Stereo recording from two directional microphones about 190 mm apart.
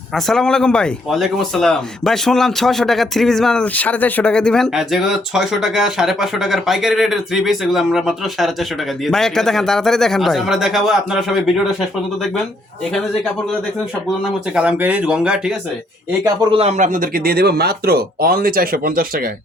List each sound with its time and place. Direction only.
0.1 s speech: centre (ahead or behind)
14.5 s speech: 5° right (ahead or behind)
16.2 s speech: 25° right (ahead or behind); by 19.3 s 50° right (ahead or behind)